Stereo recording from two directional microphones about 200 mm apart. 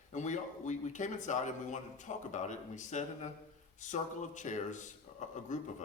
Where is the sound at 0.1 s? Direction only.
35° left (ahead or behind).